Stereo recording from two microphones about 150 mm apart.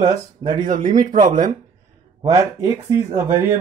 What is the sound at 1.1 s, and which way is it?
Speech, 60° right (ahead or behind).